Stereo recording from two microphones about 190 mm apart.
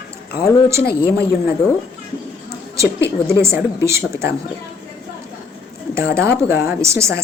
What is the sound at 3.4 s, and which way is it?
Speech, 15° right (ahead or behind).